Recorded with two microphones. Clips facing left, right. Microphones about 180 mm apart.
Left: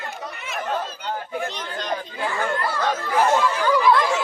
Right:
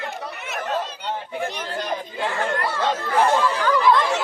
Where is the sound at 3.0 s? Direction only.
5° left (ahead or behind).